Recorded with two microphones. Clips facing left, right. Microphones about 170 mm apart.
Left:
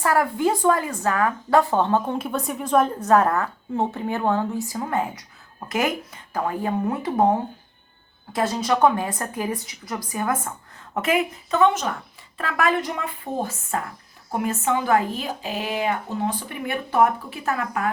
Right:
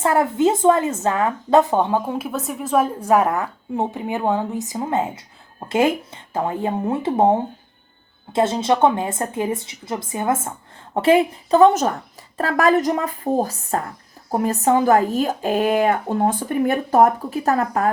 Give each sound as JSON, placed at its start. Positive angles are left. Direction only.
{"t": 0.0, "sound": "a woman's voice", "side_deg": -25}